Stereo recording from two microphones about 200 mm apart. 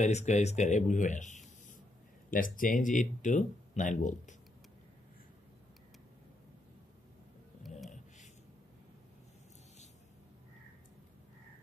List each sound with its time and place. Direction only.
0.0 s speech: 35° left (ahead or behind)